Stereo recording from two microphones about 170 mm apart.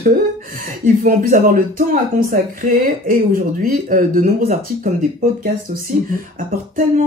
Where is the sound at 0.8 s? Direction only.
55° right (ahead or behind).